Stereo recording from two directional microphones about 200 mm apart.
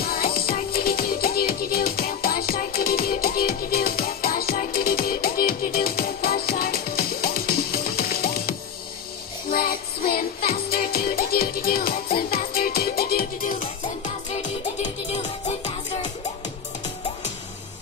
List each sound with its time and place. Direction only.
0.0 s music: 50° left (ahead or behind)
14.8 s music: 35° left (ahead or behind)